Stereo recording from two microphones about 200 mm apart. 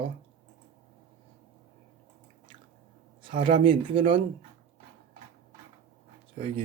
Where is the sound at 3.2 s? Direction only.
25° right (ahead or behind).